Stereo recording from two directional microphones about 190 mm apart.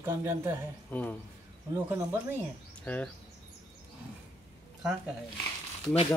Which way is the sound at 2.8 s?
5° left (ahead or behind).